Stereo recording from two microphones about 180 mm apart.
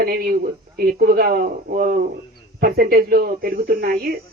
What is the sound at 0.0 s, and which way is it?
Speech, 55° right (ahead or behind).